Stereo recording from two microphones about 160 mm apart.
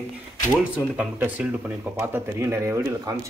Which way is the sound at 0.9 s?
10° right (ahead or behind).